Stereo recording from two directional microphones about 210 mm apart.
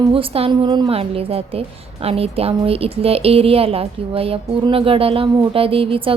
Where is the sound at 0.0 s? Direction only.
25° right (ahead or behind).